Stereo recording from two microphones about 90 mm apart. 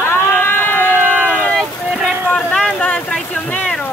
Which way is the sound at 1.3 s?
10° left (ahead or behind).